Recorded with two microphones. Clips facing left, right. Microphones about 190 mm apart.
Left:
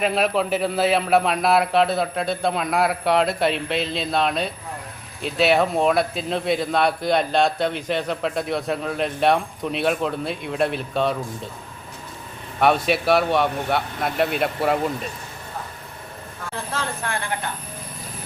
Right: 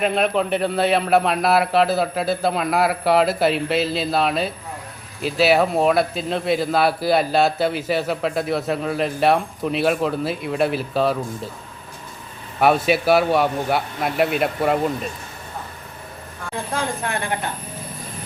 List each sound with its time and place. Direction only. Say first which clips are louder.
0.0 s speech: right 1 dB; centre (ahead or behind)
12.5 s speech: right 2 dB; 5° right (ahead or behind)
16.7 s a woman's voice: right 3 dB; 20° right (ahead or behind)